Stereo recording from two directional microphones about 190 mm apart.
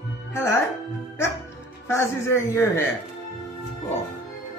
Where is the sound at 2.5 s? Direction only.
15° left (ahead or behind).